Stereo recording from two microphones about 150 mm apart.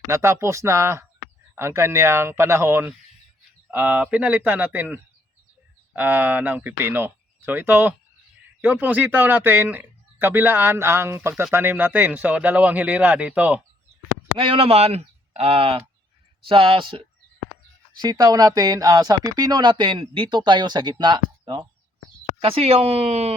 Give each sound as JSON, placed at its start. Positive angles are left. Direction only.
{"t": 0.1, "sound": "speech", "side_deg": -20}
{"t": 14.3, "sound": "speech", "side_deg": -35}
{"t": 17.9, "sound": "speech", "side_deg": -25}